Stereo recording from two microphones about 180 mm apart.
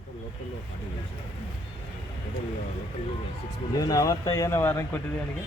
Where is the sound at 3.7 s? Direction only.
20° left (ahead or behind).